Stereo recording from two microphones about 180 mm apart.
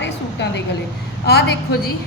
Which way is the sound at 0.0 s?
80° left.